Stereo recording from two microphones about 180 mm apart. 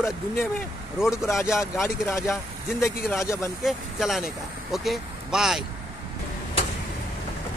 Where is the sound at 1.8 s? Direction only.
15° left (ahead or behind).